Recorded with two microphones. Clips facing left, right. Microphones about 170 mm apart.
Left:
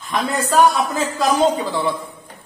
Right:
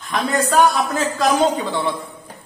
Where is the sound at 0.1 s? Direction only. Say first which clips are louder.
Right 1 dB; centre (ahead or behind).